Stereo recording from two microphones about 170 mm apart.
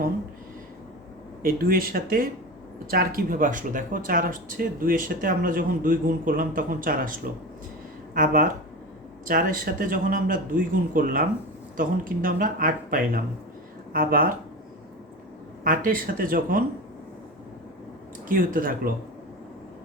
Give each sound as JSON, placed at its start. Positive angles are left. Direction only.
{"t": 1.4, "sound": "speech", "side_deg": -60}
{"t": 15.6, "sound": "speech", "side_deg": -55}
{"t": 18.3, "sound": "speech", "side_deg": -55}